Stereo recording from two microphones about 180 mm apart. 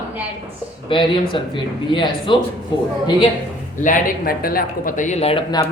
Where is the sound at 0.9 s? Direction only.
30° left (ahead or behind).